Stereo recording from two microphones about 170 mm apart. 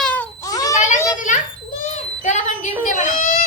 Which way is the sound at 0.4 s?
20° left (ahead or behind).